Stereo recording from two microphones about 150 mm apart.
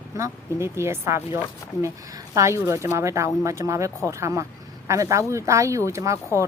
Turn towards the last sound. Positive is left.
turn(degrees=-20)  # may be behind; listen again after turning